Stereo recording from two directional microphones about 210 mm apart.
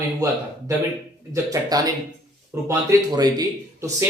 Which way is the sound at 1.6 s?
15° right (ahead or behind).